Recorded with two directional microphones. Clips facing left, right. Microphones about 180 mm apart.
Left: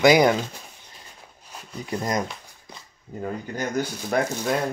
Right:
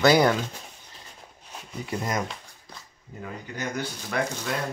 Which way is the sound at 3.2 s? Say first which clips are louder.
Left 5 dB; 40° left (ahead or behind).